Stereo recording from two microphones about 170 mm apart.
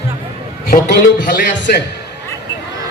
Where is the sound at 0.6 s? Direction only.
60° left (ahead or behind).